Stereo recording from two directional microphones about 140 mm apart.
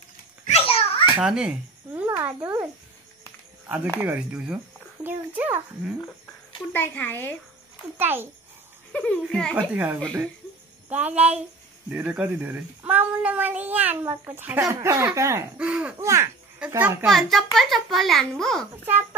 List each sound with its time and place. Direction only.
0.5 s a sound: 45° left (ahead or behind)
1.2 s a child's voice: 5° right (ahead or behind)
2.0 s a sound: 15° right (ahead or behind)
3.6 s speech: 15° right (ahead or behind)
6.7 s speech: 15° left (ahead or behind)
8.0 s speech: 15° right (ahead or behind)
8.9 s speech: 10° left (ahead or behind)
9.6 s speech: 10° right (ahead or behind)
15.5 s speech: 10° right (ahead or behind)
16.0 s speech: 20° right (ahead or behind)
17.0 s a child's voice: centre (ahead or behind)